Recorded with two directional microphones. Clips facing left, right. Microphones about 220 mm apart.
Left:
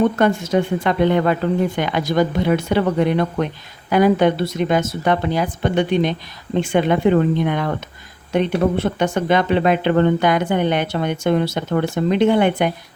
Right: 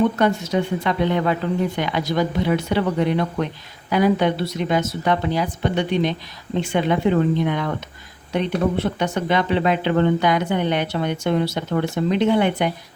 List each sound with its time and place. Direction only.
0.2 s speech: 50° left (ahead or behind)